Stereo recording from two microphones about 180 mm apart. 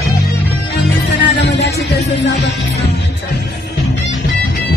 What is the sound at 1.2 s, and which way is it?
Music, 75° left (ahead or behind).